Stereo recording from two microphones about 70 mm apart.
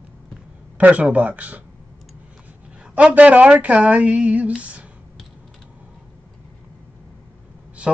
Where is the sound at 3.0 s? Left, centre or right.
Centre.